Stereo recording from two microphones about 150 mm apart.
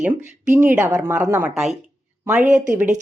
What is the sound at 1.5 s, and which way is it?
Speech, centre (ahead or behind).